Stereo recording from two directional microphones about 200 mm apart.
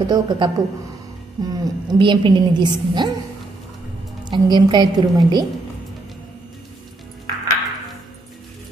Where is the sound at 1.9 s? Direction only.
25° right (ahead or behind).